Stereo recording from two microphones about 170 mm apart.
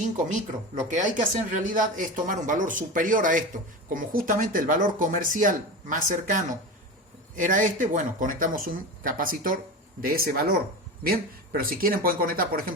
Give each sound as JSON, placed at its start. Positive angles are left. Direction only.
{"t": 0.9, "sound": "speech", "side_deg": -45}